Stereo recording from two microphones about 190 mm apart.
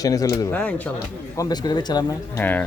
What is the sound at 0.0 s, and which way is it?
Speech, 20° left (ahead or behind).